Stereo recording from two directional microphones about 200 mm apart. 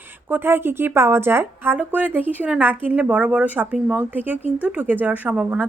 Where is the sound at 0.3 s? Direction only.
10° right (ahead or behind).